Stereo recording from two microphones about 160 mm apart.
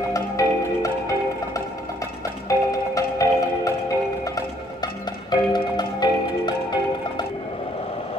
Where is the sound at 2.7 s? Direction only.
20° left (ahead or behind).